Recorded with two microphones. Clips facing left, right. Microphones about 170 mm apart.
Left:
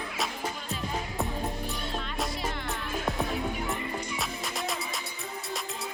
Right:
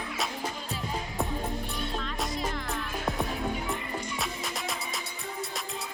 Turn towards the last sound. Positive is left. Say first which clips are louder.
# left 2 dB
turn(degrees=0)  # may be behind; listen again after turning